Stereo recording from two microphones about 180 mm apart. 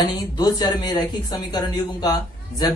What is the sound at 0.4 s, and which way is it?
Speech, 20° left (ahead or behind).